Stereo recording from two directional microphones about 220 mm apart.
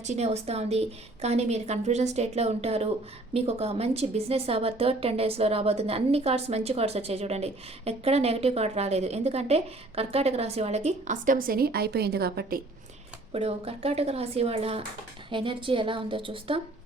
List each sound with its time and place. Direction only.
0.0 s a woman's voice: 30° right (ahead or behind)
13.3 s a woman's voice: 25° right (ahead or behind)